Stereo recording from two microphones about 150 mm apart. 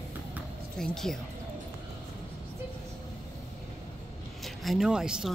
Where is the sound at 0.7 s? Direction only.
5° left (ahead or behind).